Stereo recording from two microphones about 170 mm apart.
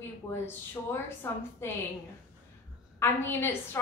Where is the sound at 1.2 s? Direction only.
15° left (ahead or behind).